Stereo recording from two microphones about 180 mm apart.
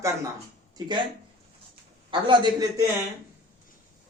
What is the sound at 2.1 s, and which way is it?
Speech, 25° right (ahead or behind).